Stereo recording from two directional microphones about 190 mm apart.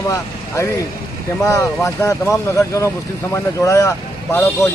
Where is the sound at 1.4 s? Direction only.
15° left (ahead or behind).